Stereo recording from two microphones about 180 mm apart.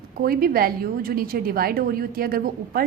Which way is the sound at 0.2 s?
55° right (ahead or behind).